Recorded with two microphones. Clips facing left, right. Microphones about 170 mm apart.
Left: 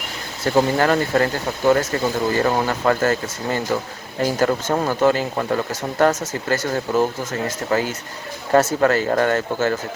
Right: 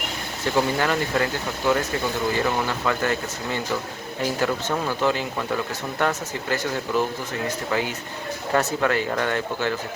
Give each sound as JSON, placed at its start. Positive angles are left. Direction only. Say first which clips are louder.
{"t": 0.5, "sound": "speech", "louder": "left 5 dB", "side_deg": 45}